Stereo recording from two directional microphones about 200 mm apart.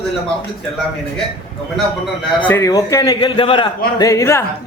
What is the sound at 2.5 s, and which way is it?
A man's voice, 15° left (ahead or behind).